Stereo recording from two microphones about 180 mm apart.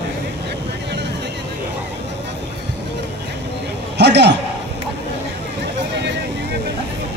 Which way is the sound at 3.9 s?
70° right (ahead or behind).